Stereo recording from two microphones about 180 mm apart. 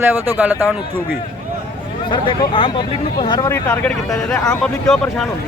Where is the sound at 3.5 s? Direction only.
10° left (ahead or behind).